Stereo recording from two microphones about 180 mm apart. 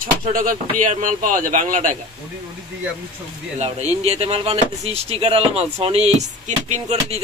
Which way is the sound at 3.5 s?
35° right (ahead or behind).